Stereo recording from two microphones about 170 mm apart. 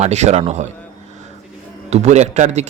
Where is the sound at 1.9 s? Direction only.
40° right (ahead or behind).